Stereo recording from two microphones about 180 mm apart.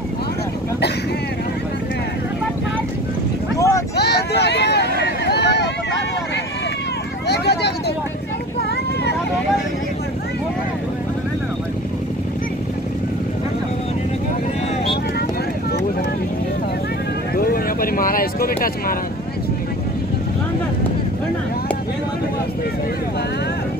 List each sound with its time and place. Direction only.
3.5 s a sound: 15° left (ahead or behind)
3.9 s vehicle: 65° left (ahead or behind)
7.2 s vehicle: 65° left (ahead or behind)
17.4 s speech: 55° left (ahead or behind)